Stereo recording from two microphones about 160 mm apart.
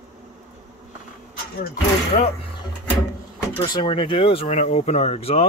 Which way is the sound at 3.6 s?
30° left (ahead or behind).